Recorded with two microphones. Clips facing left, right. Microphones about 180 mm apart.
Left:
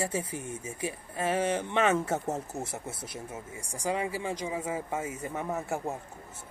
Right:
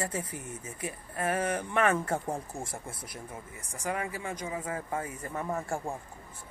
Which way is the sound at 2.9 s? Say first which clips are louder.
Left 3 dB; 25° left (ahead or behind).